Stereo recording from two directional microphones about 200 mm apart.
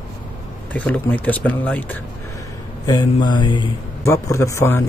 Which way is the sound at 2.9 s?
20° left (ahead or behind).